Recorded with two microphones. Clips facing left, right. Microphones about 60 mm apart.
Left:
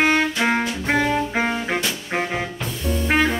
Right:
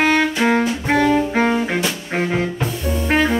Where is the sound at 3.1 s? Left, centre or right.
Centre.